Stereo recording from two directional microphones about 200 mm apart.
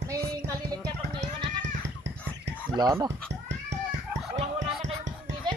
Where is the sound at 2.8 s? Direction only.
15° right (ahead or behind).